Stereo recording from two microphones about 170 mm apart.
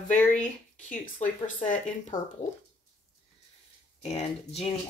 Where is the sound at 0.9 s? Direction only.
50° left (ahead or behind).